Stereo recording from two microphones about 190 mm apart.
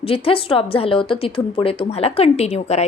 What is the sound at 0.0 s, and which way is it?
A woman's voice, 30° left (ahead or behind).